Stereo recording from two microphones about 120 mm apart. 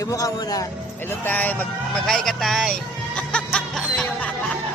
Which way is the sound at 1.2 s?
15° left (ahead or behind).